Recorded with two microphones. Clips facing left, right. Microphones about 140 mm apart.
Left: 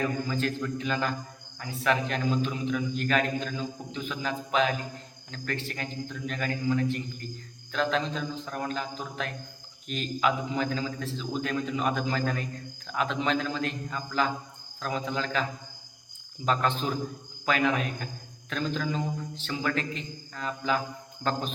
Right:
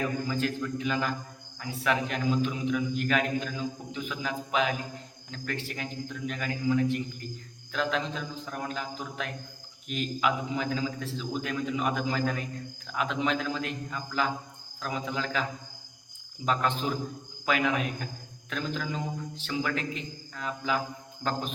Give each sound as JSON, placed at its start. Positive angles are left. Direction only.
{"t": 0.3, "sound": "a man's voice", "side_deg": -10}
{"t": 16.5, "sound": "a man's voice", "side_deg": -10}